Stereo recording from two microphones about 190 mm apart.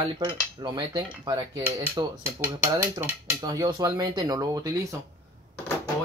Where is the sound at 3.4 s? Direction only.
20° right (ahead or behind).